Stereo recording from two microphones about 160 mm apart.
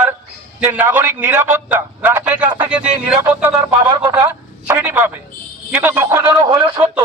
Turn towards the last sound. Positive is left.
turn(degrees=-25)  # may be behind; listen again after turning